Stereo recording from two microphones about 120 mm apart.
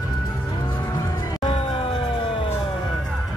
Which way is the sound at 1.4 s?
55° left (ahead or behind).